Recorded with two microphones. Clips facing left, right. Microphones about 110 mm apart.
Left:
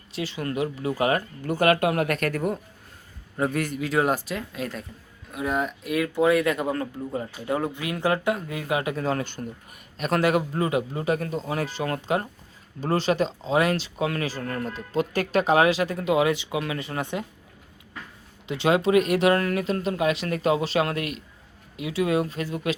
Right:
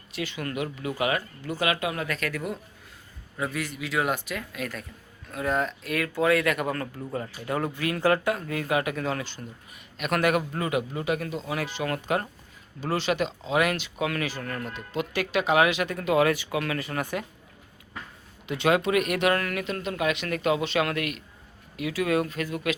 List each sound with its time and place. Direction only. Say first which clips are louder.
0.1 s speech: left 3 dB; 30° left (ahead or behind)
5.3 s speech: even; 10° left (ahead or behind)
12.8 s speech: left 3 dB; 40° left (ahead or behind)
18.4 s speech: left 2 dB; 25° left (ahead or behind)